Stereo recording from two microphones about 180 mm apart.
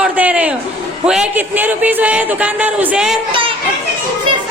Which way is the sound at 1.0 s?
5° right (ahead or behind).